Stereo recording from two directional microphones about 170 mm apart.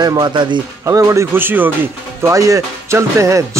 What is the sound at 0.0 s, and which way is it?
Speech, 25° right (ahead or behind).